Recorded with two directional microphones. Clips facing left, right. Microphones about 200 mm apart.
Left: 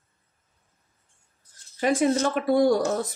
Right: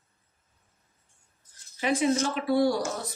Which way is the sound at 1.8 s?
50° left (ahead or behind).